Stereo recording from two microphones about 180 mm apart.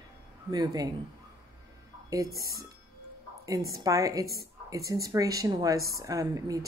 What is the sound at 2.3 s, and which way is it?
Speech, 20° right (ahead or behind).